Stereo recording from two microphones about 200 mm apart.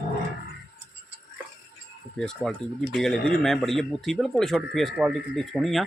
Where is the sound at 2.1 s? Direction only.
5° left (ahead or behind).